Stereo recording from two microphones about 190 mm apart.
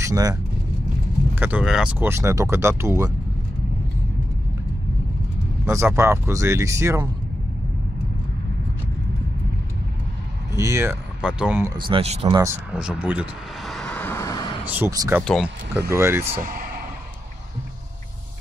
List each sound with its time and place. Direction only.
0.0 s speech: 20° right (ahead or behind)
1.3 s speech: 10° right (ahead or behind)
5.7 s speech: 15° right (ahead or behind)
10.5 s speech: 15° right (ahead or behind)
11.7 s speech: 30° right (ahead or behind)
12.7 s vehicle: 5° right (ahead or behind); by 14.6 s 20° left (ahead or behind)
14.7 s speech: 15° right (ahead or behind)
15.2 s speech: centre (ahead or behind)
15.9 s speech: 15° right (ahead or behind)
16.3 s speech: 50° right (ahead or behind)